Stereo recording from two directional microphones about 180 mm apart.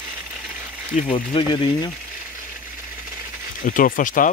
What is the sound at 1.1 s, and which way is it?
Speech, 30° left (ahead or behind).